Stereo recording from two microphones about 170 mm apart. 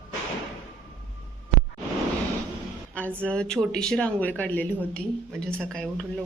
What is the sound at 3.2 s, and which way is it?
A woman's voice, 5° left (ahead or behind).